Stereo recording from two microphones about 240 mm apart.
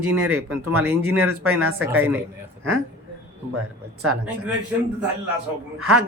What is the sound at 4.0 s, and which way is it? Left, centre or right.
Speech, right.